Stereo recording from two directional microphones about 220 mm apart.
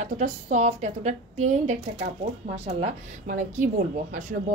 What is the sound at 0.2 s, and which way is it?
Speech, 30° right (ahead or behind).